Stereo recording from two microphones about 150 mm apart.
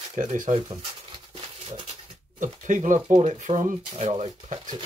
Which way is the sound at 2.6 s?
55° right (ahead or behind).